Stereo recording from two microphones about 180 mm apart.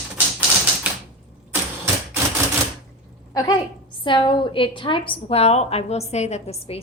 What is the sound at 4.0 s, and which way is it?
A woman's voice, 25° left (ahead or behind).